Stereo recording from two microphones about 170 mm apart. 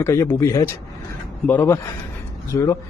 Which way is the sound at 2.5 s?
20° left (ahead or behind).